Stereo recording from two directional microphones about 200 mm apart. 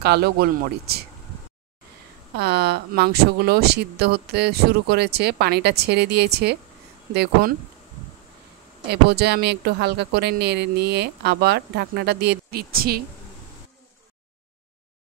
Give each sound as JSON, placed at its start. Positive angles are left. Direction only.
{"t": 0.0, "sound": "speech", "side_deg": -55}
{"t": 2.3, "sound": "speech", "side_deg": -55}
{"t": 8.8, "sound": "speech", "side_deg": -55}